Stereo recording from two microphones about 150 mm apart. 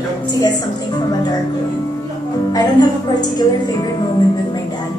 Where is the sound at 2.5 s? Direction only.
25° left (ahead or behind).